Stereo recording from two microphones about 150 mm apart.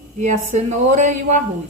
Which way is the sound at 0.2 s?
55° right (ahead or behind).